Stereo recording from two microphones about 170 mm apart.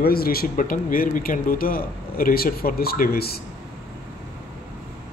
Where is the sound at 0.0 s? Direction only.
60° left (ahead or behind).